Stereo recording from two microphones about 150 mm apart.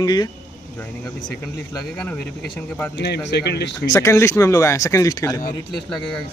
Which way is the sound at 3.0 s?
90° left.